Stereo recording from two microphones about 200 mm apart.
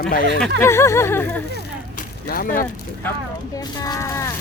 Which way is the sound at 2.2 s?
45° left (ahead or behind).